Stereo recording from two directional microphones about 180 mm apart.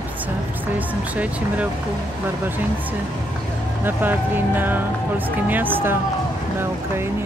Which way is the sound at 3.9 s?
10° right (ahead or behind).